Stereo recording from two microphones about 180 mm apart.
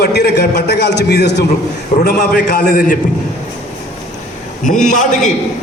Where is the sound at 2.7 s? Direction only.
45° left (ahead or behind).